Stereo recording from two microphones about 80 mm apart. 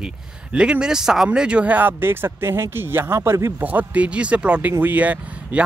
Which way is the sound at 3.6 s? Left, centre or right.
Centre.